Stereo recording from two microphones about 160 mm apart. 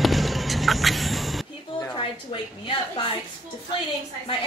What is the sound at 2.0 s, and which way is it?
A woman's voice, 30° left (ahead or behind).